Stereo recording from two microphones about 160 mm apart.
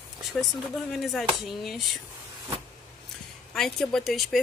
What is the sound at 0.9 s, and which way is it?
Speech, centre (ahead or behind).